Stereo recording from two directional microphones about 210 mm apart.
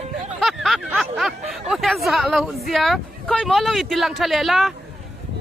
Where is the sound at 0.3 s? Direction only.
Centre (ahead or behind).